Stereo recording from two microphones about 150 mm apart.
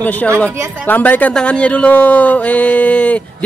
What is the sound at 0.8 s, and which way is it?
Speech, 10° left (ahead or behind).